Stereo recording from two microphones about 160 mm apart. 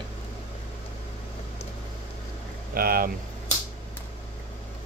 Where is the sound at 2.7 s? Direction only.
70° right (ahead or behind).